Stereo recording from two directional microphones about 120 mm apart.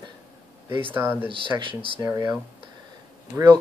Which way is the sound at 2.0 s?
25° right (ahead or behind).